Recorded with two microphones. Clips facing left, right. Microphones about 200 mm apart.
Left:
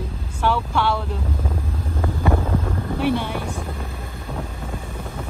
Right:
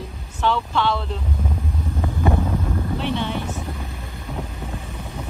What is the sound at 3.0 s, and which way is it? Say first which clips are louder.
Vehicle: left 6 dB; 10° left (ahead or behind).